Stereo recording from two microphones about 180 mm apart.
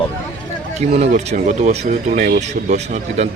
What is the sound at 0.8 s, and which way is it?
Speech, 40° right (ahead or behind).